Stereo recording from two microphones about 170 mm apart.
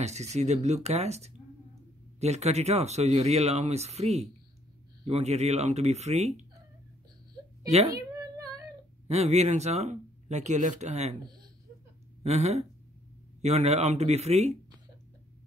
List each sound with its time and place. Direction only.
0.0 s speech: 40° right (ahead or behind)
7.9 s a sound: 20° right (ahead or behind)
9.0 s speech: 40° right (ahead or behind)
12.2 s speech: 40° right (ahead or behind)